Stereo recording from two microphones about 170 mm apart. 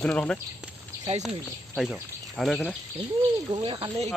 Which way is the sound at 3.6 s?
30° right (ahead or behind).